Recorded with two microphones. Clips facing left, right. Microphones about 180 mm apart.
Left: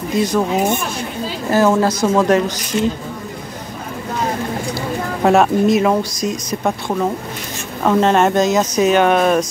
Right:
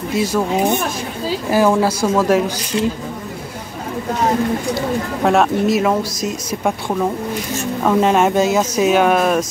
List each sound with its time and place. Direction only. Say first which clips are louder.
0.1 s speech: left 1 dB; 5° right (ahead or behind)
1.8 s speech: left 1 dB; 10° right (ahead or behind)
2.7 s speech: left 1 dB; 35° left (ahead or behind)
5.2 s speech: left 2 dB; centre (ahead or behind)